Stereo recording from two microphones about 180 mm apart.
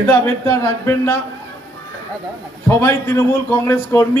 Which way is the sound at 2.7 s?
15° left (ahead or behind).